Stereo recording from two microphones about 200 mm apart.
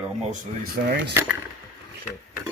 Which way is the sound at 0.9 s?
55° right (ahead or behind).